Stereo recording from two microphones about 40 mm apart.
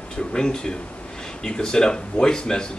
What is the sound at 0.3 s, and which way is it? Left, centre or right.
Speech, centre.